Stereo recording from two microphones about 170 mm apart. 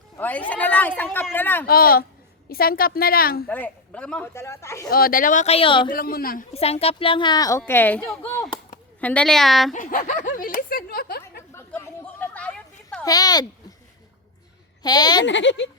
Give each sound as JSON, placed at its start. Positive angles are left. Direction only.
{"t": 0.2, "sound": "a man's voice", "side_deg": 10}
{"t": 1.6, "sound": "speech", "side_deg": 60}
{"t": 3.5, "sound": "a man's voice", "side_deg": 10}
{"t": 4.9, "sound": "speech", "side_deg": 60}
{"t": 5.9, "sound": "speech", "side_deg": 60}
{"t": 6.5, "sound": "a child's voice", "side_deg": 35}
{"t": 9.7, "sound": "speech", "side_deg": 55}
{"t": 11.5, "sound": "a sound", "side_deg": 15}
{"t": 13.0, "sound": "speech", "side_deg": 20}
{"t": 14.8, "sound": "a child's voice", "side_deg": 25}
{"t": 15.2, "sound": "speech", "side_deg": 90}